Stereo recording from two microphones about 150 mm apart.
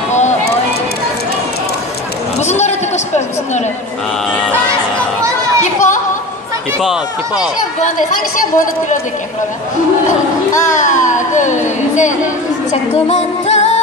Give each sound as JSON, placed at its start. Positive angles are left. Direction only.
{"t": 2.4, "sound": "a man's voice", "side_deg": 50}
{"t": 4.3, "sound": "speech", "side_deg": 5}
{"t": 5.6, "sound": "speech", "side_deg": 55}
{"t": 6.8, "sound": "speech", "side_deg": -5}
{"t": 8.4, "sound": "speech", "side_deg": 65}
{"t": 10.6, "sound": "speech", "side_deg": 55}
{"t": 13.1, "sound": "music", "side_deg": 50}